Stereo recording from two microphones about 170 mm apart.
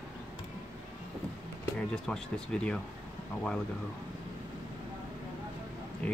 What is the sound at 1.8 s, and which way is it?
Speech, 5° left (ahead or behind).